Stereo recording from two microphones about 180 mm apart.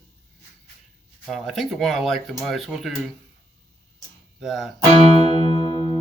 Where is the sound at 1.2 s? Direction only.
Centre (ahead or behind).